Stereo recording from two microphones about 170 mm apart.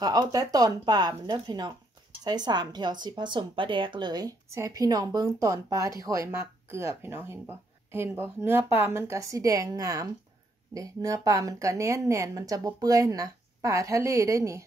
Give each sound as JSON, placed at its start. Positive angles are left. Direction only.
{"t": 0.0, "sound": "a woman's voice", "side_deg": -20}